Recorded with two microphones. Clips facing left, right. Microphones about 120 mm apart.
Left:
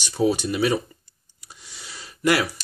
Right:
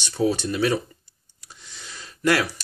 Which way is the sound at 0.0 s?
15° left (ahead or behind).